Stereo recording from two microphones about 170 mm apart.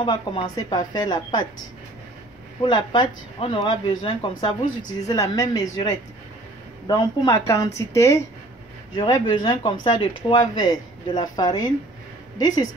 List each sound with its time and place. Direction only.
0.0 s speech: 25° left (ahead or behind)
2.6 s speech: 25° left (ahead or behind)
6.9 s speech: 20° left (ahead or behind)
8.9 s speech: 30° left (ahead or behind)